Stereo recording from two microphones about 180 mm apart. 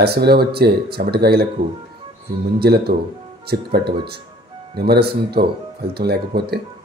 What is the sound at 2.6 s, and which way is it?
Speech, 60° right (ahead or behind).